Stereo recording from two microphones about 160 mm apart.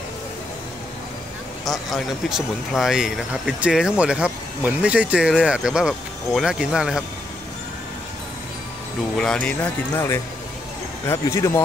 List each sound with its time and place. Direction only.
1.6 s speech: centre (ahead or behind)
9.2 s speech: 5° left (ahead or behind)